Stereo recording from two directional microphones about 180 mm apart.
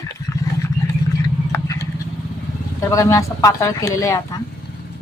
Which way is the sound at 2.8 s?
15° left (ahead or behind).